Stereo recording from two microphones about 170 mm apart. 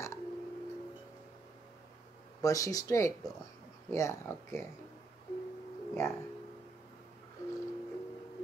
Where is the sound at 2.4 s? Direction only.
20° left (ahead or behind).